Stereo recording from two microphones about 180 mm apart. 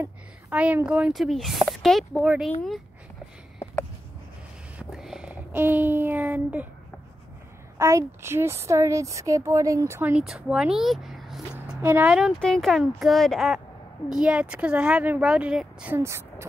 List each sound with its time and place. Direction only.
0.0 s a woman's voice: 10° right (ahead or behind)
4.7 s a sound: 5° right (ahead or behind)
7.7 s a woman's voice: 15° right (ahead or behind)